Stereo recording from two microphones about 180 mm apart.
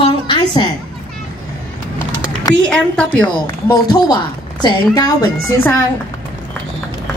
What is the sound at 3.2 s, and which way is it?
A woman's voice, 20° left (ahead or behind).